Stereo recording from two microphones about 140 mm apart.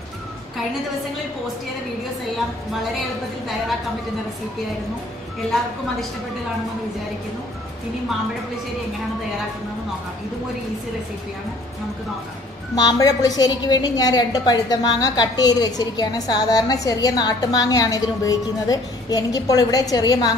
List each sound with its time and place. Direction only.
12.7 s a woman's voice: 25° left (ahead or behind)